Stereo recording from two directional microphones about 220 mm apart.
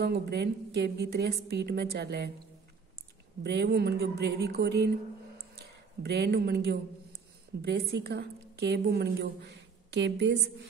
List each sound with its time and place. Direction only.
0.0 s a woman's voice: 45° right (ahead or behind)
3.4 s a woman's voice: 50° right (ahead or behind)
6.0 s a woman's voice: 45° right (ahead or behind)